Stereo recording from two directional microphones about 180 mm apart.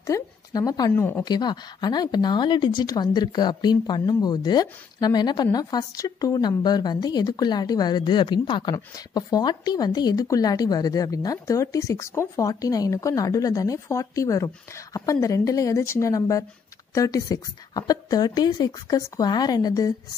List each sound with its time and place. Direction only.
0.0 s speech: 20° left (ahead or behind)
1.2 s speech: 25° left (ahead or behind)